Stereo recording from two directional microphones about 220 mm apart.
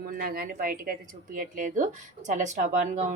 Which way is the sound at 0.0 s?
45° right (ahead or behind).